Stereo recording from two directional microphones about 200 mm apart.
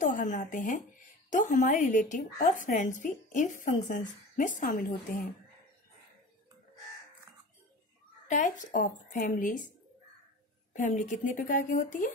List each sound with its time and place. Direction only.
0.0 s a woman's voice: 40° left (ahead or behind)
8.3 s a woman's voice: 40° left (ahead or behind)
10.7 s a woman's voice: 35° left (ahead or behind)